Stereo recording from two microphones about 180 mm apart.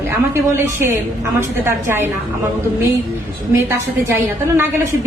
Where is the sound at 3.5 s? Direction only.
15° right (ahead or behind).